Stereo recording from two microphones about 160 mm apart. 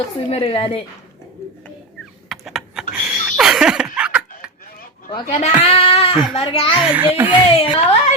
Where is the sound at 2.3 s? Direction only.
Centre (ahead or behind).